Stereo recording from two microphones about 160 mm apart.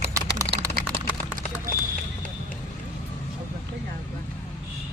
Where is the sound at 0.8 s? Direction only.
60° right (ahead or behind).